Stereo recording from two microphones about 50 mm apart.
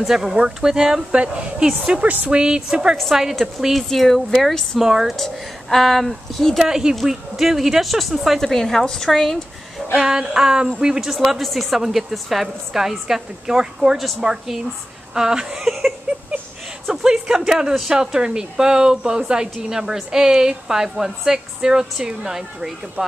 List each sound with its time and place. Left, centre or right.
0.0 s a woman's voice: centre
1.1 s a woman's voice: right
2.0 s speech: right
2.3 s a woman's voice: centre
5.1 s a woman's voice: centre
9.9 s a woman's voice: centre
11.1 s a woman's voice: centre
16.9 s a woman's voice: centre